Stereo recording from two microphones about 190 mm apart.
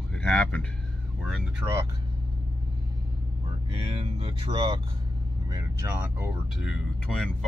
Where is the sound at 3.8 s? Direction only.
30° right (ahead or behind).